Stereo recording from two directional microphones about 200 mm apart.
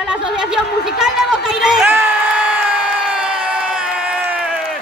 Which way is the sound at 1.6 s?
5° right (ahead or behind).